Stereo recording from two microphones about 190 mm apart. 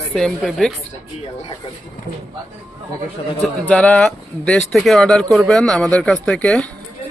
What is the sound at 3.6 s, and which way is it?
Speech, 5° left (ahead or behind).